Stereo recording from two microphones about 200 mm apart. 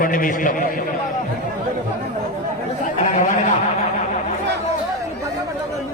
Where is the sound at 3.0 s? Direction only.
40° left (ahead or behind).